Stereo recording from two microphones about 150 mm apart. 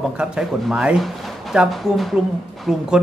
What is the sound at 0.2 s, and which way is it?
Speech, 5° right (ahead or behind).